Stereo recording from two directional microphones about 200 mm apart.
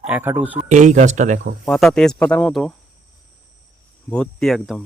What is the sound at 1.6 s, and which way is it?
Speech, 5° left (ahead or behind).